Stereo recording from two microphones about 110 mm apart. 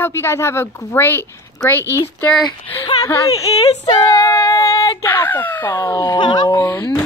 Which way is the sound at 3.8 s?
40° left (ahead or behind).